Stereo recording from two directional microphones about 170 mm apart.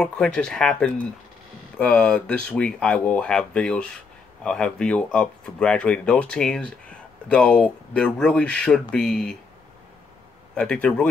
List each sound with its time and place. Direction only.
0.0 s speech: 5° left (ahead or behind)
10.5 s speech: 5° left (ahead or behind)